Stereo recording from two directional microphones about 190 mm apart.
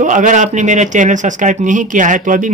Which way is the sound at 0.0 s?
40° right (ahead or behind).